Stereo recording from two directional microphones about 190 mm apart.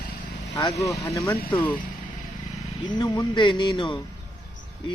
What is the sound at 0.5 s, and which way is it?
Speech, 15° left (ahead or behind).